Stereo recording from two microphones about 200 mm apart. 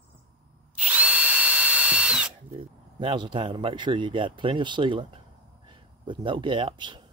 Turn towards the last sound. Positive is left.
turn(degrees=-25)  # may be behind; listen again after turning